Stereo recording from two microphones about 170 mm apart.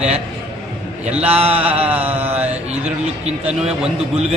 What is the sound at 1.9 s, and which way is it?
Mantra, 10° right (ahead or behind).